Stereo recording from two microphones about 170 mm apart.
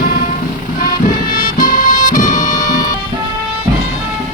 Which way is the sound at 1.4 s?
50° left (ahead or behind).